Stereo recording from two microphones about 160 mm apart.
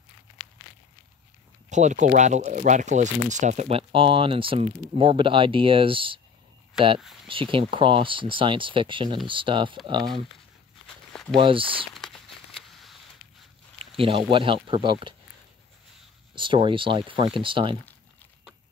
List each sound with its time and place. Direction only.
1.7 s speech: 50° right (ahead or behind); by 6.2 s 35° right (ahead or behind)
7.2 s speech: 35° right (ahead or behind)
11.3 s speech: 35° right (ahead or behind)
11.9 s a sound: centre (ahead or behind)
13.7 s speech: 35° right (ahead or behind)
16.3 s speech: 30° right (ahead or behind)